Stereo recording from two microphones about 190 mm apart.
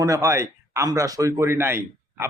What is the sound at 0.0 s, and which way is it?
Speech, 15° right (ahead or behind).